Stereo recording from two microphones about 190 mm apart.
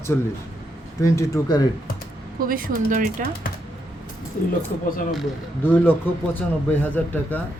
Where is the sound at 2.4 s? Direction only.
50° right (ahead or behind).